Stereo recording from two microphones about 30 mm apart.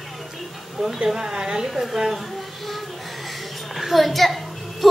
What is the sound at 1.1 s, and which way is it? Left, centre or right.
A woman's voice, right.